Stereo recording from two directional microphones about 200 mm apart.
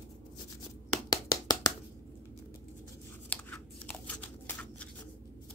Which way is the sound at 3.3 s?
5° left (ahead or behind).